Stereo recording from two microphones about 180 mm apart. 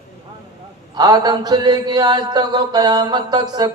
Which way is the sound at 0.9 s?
20° right (ahead or behind).